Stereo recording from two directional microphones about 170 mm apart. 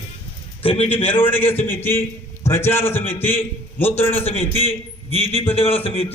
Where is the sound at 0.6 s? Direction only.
35° left (ahead or behind).